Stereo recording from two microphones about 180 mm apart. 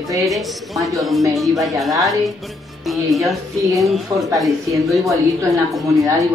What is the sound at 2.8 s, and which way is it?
A woman's voice, centre (ahead or behind).